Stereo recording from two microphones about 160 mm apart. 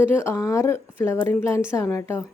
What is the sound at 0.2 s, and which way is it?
Speech, 15° left (ahead or behind).